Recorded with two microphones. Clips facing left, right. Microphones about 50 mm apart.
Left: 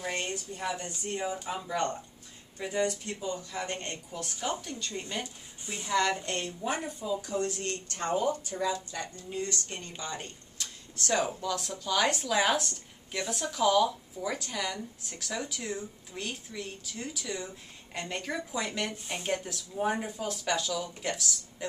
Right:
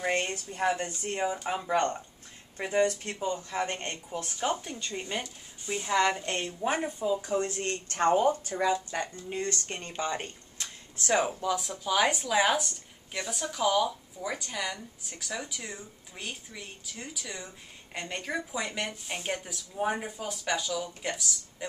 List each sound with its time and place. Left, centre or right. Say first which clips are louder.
0.0 s speech: right 4 dB; right
11.0 s speech: right 2 dB; right; by 21.6 s centre